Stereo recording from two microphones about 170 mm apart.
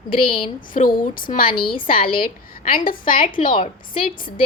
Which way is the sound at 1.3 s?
35° left (ahead or behind).